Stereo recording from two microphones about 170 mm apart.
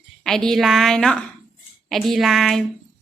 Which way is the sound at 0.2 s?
5° left (ahead or behind).